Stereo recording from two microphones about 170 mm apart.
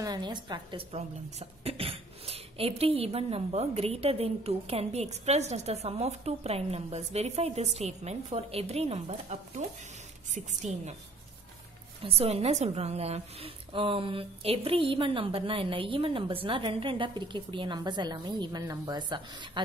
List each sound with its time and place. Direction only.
0.0 s a woman's voice: 25° right (ahead or behind); by 11.0 s 45° right (ahead or behind)
12.0 s a woman's voice: 35° right (ahead or behind)